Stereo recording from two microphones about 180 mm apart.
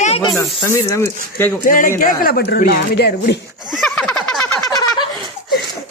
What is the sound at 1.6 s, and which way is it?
A woman's voice, 50° left (ahead or behind).